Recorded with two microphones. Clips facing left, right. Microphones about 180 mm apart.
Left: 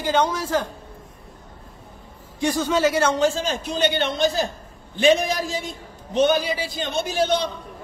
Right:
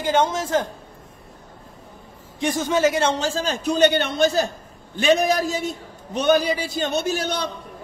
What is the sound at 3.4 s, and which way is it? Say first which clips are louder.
Speech: right 5 dB; 45° right (ahead or behind).